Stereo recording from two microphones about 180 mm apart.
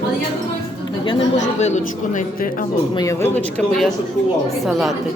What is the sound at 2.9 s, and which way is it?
Speech, 20° left (ahead or behind).